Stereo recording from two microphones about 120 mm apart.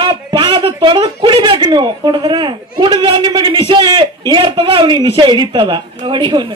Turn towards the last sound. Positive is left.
turn(degrees=-40)  # may be behind; listen again after turning